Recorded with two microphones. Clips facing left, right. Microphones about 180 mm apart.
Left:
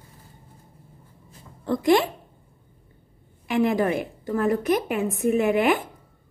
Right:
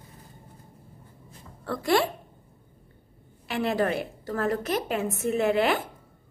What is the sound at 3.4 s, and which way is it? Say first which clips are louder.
A woman's voice: left 4 dB; 15° left (ahead or behind).